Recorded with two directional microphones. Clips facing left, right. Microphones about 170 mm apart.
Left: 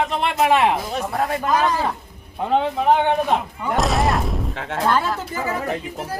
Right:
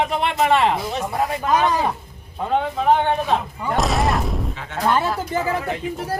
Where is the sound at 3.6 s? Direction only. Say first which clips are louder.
Left 1 dB; centre (ahead or behind).